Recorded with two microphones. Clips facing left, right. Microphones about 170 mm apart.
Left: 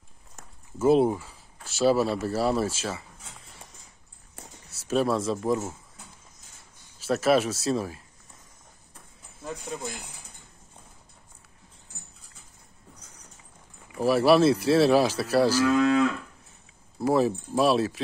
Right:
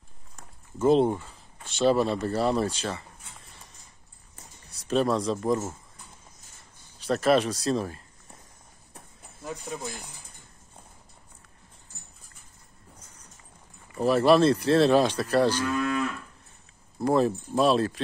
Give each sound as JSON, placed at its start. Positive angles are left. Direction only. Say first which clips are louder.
{"t": 0.7, "sound": "speech", "louder": "left 1 dB", "side_deg": 5}
{"t": 4.6, "sound": "speech", "louder": "even", "side_deg": 5}
{"t": 7.0, "sound": "speech", "louder": "even", "side_deg": 5}
{"t": 9.7, "sound": "speech", "louder": "left 1 dB", "side_deg": -5}
{"t": 13.9, "sound": "speech", "louder": "even", "side_deg": 5}
{"t": 15.5, "sound": "moo", "louder": "left 6 dB", "side_deg": 90}
{"t": 17.0, "sound": "speech", "louder": "even", "side_deg": 5}